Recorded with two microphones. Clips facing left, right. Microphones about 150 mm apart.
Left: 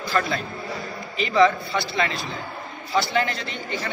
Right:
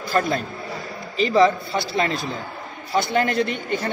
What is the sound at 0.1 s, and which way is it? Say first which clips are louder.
A man's voice: right 3 dB; 45° right (ahead or behind).